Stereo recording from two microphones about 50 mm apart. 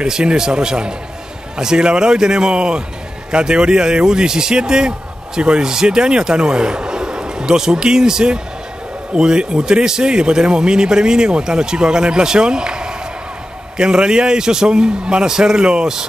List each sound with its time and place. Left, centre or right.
0.0 s a man's voice: centre